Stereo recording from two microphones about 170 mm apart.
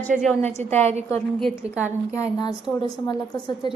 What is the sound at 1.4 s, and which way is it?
Speech, centre (ahead or behind).